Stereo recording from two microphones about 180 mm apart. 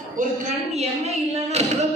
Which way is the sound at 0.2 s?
40° right (ahead or behind).